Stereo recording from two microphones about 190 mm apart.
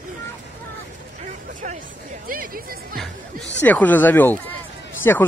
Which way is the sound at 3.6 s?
10° left (ahead or behind).